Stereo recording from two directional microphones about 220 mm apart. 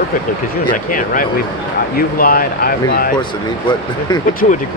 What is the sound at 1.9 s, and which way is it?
Speech, 40° left (ahead or behind).